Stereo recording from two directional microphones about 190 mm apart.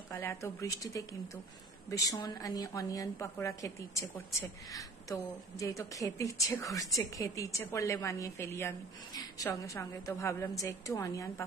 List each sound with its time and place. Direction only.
0.1 s a woman's voice: 15° left (ahead or behind)